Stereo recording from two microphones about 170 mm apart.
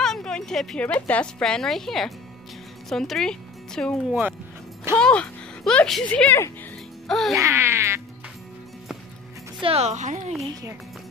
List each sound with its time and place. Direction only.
0.0 s a woman's voice: 5° left (ahead or behind)
4.1 s a sound: 5° right (ahead or behind)
4.9 s speech: 5° left (ahead or behind)
7.1 s music: centre (ahead or behind)
7.3 s a sound: 15° right (ahead or behind)
9.6 s speech: 35° right (ahead or behind)